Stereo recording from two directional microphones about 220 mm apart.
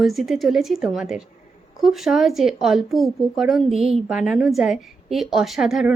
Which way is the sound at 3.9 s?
Centre (ahead or behind).